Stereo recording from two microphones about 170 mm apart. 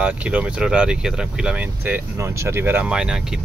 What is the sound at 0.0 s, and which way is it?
Speech, 10° right (ahead or behind).